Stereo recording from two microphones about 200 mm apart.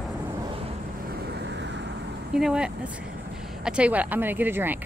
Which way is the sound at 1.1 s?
55° right (ahead or behind).